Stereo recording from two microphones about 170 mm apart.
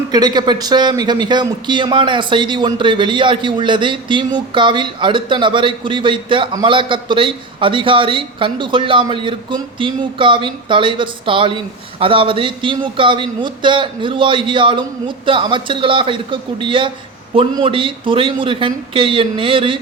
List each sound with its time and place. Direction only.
0.1 s a man's voice: 25° right (ahead or behind)